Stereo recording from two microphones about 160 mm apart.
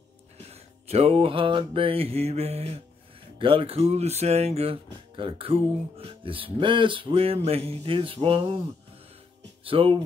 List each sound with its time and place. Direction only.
0.5 s music: 40° right (ahead or behind)
3.3 s speech: 35° right (ahead or behind)
9.7 s speech: 35° right (ahead or behind)